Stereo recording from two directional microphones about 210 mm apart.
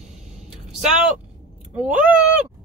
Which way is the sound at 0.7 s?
Centre (ahead or behind).